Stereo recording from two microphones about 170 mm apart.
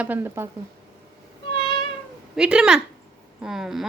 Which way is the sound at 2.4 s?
5° right (ahead or behind).